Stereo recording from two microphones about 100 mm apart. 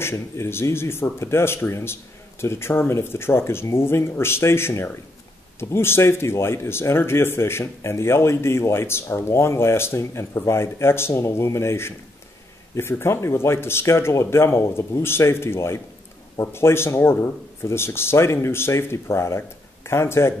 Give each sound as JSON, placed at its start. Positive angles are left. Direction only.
{"t": 0.0, "sound": "speech", "side_deg": 25}